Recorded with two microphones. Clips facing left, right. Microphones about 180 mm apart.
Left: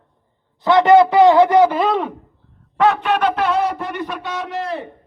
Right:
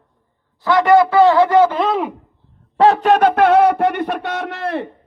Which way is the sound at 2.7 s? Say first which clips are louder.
Right 4 dB; 35° right (ahead or behind).